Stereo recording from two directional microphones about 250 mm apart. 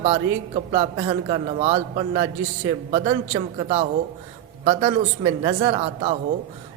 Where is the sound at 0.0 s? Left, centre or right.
Right.